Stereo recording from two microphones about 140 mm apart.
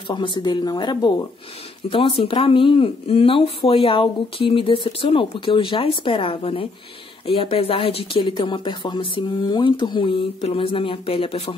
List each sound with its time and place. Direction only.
0.1 s speech: 35° left (ahead or behind)